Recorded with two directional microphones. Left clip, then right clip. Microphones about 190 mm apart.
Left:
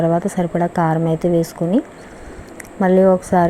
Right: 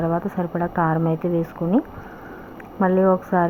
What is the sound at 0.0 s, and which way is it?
Speech, 35° left (ahead or behind).